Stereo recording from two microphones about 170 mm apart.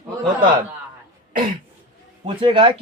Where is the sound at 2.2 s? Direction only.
30° right (ahead or behind).